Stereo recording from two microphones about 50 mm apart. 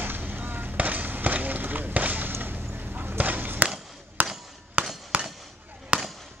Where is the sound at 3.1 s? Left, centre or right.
Right.